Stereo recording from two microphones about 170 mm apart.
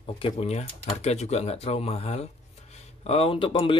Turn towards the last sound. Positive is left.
turn(degrees=30)  # may be behind; listen again after turning